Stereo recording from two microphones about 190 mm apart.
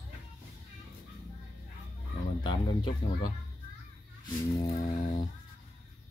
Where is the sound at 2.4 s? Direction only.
25° left (ahead or behind).